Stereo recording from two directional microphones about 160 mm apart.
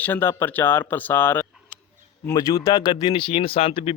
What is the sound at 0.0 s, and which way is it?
Speech, 15° left (ahead or behind).